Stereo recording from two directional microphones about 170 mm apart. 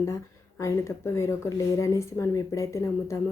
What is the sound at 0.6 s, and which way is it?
Speech, 15° left (ahead or behind).